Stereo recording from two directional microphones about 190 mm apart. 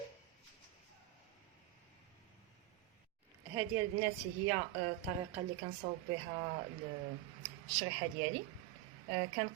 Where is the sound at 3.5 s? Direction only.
15° right (ahead or behind).